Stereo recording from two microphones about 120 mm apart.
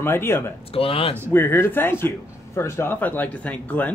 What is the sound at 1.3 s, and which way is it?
Speech, 20° left (ahead or behind).